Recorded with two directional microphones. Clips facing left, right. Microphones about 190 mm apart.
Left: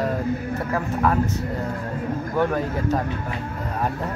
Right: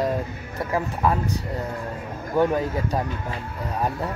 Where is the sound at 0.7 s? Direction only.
10° right (ahead or behind).